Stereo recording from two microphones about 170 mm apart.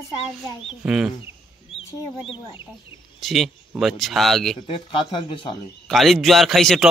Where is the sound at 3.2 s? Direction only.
Centre (ahead or behind).